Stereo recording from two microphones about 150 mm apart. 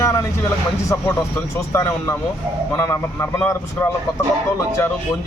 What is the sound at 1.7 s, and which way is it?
A man's voice, 20° left (ahead or behind).